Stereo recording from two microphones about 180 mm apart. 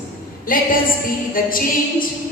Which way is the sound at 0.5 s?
50° left (ahead or behind).